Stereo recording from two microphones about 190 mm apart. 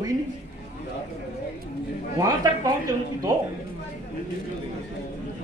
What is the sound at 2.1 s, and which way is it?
Speech, 20° right (ahead or behind).